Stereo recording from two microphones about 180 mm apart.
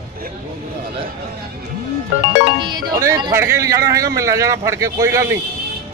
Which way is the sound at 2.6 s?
25° right (ahead or behind).